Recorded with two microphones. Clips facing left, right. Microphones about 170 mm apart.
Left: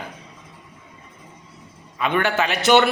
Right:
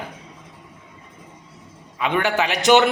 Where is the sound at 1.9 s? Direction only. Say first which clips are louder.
Even; 15° right (ahead or behind).